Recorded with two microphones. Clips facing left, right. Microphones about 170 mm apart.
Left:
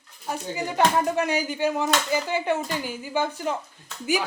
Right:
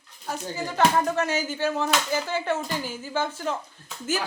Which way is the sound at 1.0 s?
15° left (ahead or behind).